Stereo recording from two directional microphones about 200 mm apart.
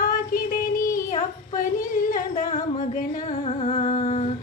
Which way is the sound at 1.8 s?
40° left (ahead or behind).